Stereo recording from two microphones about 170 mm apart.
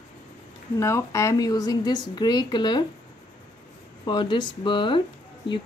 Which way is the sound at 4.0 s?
25° left (ahead or behind).